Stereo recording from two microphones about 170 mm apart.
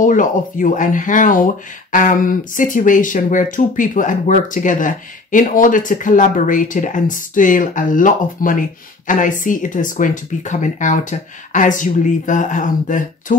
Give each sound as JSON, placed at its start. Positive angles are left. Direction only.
{"t": 0.0, "sound": "speech", "side_deg": 50}